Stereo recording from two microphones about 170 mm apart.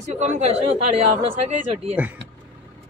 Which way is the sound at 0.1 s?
45° right (ahead or behind).